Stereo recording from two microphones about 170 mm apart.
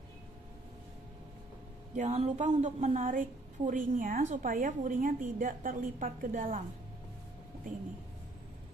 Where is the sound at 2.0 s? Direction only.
45° right (ahead or behind).